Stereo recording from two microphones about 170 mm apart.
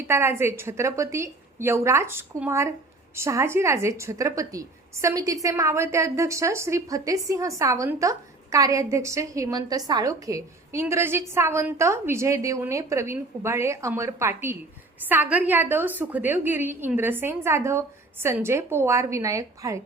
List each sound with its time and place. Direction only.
0.0 s a woman's voice: 15° right (ahead or behind)